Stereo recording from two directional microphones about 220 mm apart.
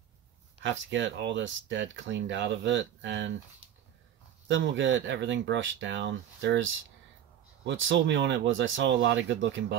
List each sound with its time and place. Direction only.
0.6 s speech: 55° right (ahead or behind)
4.5 s speech: 55° right (ahead or behind)